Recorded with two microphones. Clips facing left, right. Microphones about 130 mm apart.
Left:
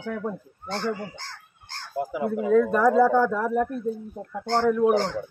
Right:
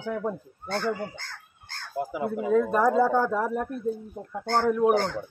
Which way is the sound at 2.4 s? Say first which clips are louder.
Left 3 dB; 15° right (ahead or behind).